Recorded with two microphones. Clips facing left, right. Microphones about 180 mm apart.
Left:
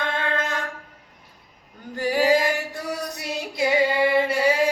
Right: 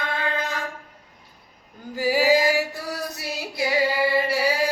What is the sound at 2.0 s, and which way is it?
Female singing, 5° right (ahead or behind).